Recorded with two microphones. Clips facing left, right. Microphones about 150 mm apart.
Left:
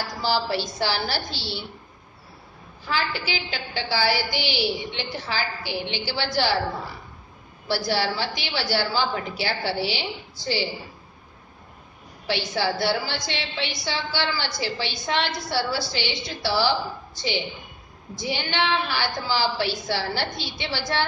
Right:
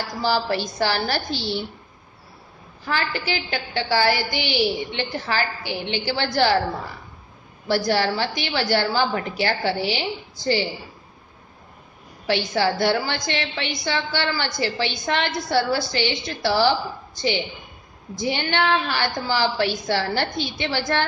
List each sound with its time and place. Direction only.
0.2 s a woman's voice: 50° right (ahead or behind)
2.9 s a woman's voice: 55° right (ahead or behind)
7.6 s a woman's voice: 50° right (ahead or behind)
12.3 s a woman's voice: 55° right (ahead or behind)